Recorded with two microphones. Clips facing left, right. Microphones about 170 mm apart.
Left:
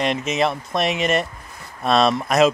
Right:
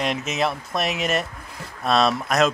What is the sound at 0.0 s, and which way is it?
A man's voice, centre (ahead or behind).